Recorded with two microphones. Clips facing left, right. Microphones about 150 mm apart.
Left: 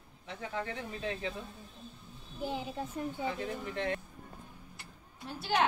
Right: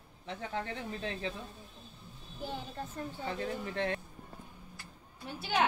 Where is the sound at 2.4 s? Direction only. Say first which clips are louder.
Left 4 dB; 10° left (ahead or behind).